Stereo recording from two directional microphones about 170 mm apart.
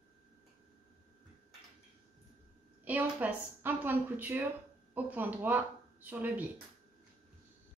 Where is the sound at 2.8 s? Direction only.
10° right (ahead or behind).